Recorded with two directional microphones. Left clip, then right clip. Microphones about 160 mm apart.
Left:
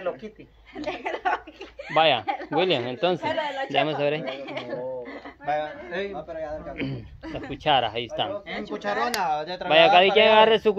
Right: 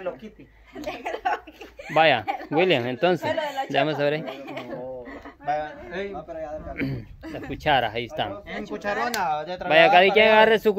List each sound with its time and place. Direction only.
0.7 s speech: 25° right (ahead or behind)
1.9 s a woman's voice: 40° right (ahead or behind)
3.3 s a woman's voice: 25° right (ahead or behind)
4.2 s a woman's voice: 5° left (ahead or behind)
5.4 s speech: 10° right (ahead or behind)
6.8 s speech: 25° right (ahead or behind)
8.5 s speech: 10° right (ahead or behind)
9.2 s speech: 20° right (ahead or behind)